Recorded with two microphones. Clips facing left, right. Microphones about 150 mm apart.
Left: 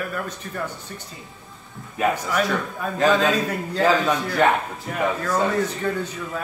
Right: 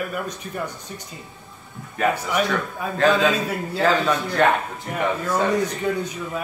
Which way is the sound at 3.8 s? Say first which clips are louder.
Left 1 dB; 10° left (ahead or behind).